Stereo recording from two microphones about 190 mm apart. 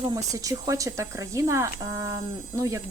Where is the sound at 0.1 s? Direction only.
20° right (ahead or behind).